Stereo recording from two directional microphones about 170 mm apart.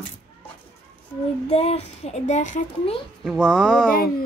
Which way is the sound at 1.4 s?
35° left (ahead or behind).